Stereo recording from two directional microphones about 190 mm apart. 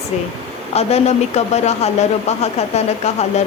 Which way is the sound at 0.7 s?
35° left (ahead or behind).